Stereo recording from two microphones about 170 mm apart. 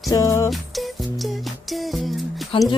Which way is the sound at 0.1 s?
20° left (ahead or behind).